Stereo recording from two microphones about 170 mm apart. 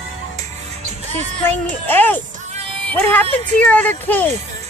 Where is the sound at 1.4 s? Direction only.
10° left (ahead or behind).